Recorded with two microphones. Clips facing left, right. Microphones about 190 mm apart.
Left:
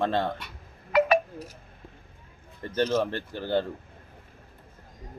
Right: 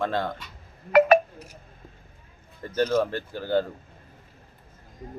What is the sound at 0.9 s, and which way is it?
Wind chime, 55° right (ahead or behind).